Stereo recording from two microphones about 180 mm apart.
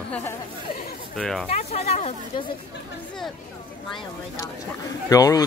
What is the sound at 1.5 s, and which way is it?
Speech, 35° left (ahead or behind).